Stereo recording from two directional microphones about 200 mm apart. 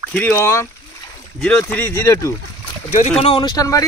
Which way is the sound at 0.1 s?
10° left (ahead or behind).